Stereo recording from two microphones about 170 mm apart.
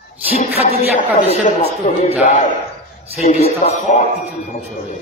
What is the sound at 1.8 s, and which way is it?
Speech, 55° left (ahead or behind).